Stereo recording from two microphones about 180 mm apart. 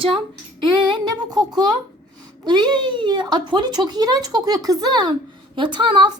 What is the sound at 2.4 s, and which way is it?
Speech, 25° right (ahead or behind).